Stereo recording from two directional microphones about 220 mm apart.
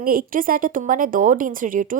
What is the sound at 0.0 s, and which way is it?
A woman's voice, 40° right (ahead or behind).